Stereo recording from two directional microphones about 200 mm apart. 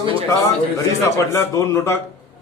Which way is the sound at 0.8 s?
15° left (ahead or behind).